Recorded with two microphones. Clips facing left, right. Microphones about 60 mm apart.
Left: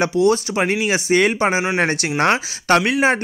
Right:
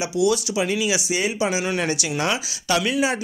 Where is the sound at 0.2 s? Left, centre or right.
Left.